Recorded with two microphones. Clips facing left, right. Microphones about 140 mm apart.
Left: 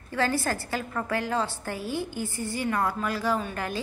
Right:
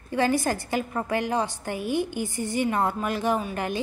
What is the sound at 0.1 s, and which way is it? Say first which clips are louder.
A woman's voice: right 3 dB; 15° right (ahead or behind).